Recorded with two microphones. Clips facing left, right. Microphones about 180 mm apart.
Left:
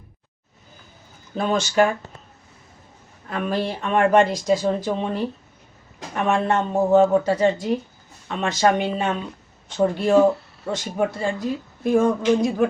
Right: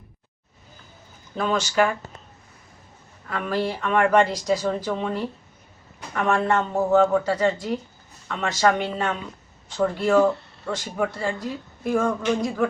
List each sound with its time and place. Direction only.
1.4 s speech: 25° left (ahead or behind)
3.2 s speech: 20° left (ahead or behind)